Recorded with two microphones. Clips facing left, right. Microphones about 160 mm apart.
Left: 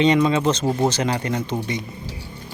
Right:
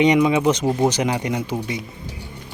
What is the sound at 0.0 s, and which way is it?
Speech, 15° right (ahead or behind).